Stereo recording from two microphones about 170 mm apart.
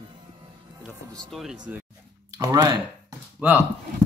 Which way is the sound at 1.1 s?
5° left (ahead or behind).